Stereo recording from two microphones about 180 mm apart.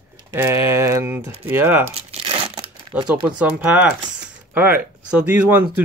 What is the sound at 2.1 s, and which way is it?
Crumpling, 30° right (ahead or behind).